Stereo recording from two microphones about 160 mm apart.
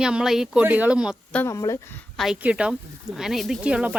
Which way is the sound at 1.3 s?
20° left (ahead or behind).